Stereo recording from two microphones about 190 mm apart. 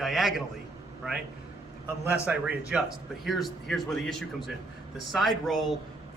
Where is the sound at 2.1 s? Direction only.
5° right (ahead or behind).